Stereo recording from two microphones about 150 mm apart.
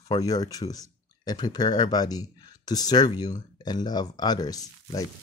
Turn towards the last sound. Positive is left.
turn(degrees=25)  # may be behind; listen again after turning